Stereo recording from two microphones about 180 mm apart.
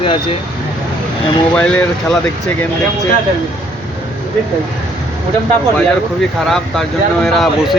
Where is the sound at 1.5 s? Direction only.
5° left (ahead or behind).